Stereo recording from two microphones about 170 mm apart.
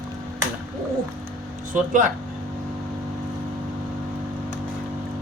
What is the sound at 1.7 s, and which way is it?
Speech, 50° right (ahead or behind).